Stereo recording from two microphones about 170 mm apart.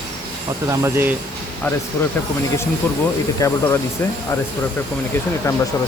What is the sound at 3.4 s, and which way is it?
Speech, 20° left (ahead or behind).